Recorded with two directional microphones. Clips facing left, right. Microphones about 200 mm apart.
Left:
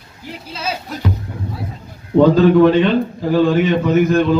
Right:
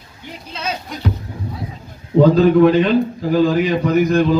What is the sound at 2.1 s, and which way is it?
A man's voice, centre (ahead or behind).